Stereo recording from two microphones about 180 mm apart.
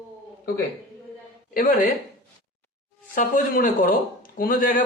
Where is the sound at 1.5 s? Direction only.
50° left (ahead or behind).